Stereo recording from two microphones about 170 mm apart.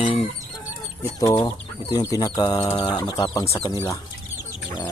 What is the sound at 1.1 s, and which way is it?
Speech, 20° left (ahead or behind).